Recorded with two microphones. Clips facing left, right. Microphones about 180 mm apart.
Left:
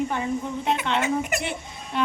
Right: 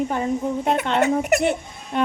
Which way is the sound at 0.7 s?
50° right (ahead or behind).